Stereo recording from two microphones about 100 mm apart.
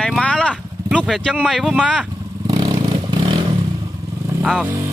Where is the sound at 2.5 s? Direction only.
40° right (ahead or behind).